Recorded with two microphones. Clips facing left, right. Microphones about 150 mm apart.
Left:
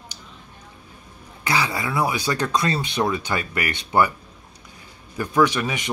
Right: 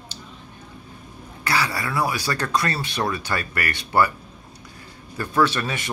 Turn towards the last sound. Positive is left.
turn(degrees=15)  # may be behind; listen again after turning